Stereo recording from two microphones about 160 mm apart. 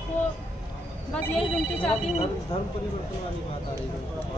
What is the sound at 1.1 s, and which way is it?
Speech, 10° left (ahead or behind).